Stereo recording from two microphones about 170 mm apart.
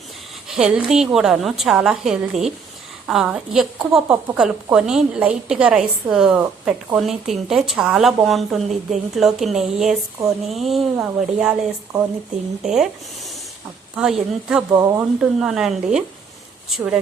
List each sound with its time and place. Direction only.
0.4 s a woman's voice: 5° right (ahead or behind)
12.6 s a woman's voice: 5° right (ahead or behind)
14.7 s speech: 20° right (ahead or behind)
15.2 s a woman's voice: 5° right (ahead or behind)